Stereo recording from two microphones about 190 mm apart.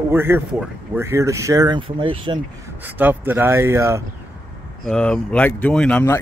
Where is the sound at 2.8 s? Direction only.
10° right (ahead or behind).